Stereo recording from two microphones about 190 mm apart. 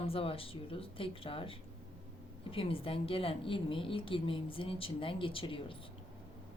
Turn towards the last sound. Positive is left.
turn(degrees=30)  # may be behind; listen again after turning